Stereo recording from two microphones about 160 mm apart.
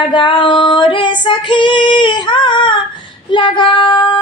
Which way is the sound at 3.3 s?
30° left (ahead or behind).